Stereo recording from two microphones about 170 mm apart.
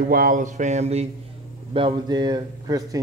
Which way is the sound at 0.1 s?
55° right (ahead or behind).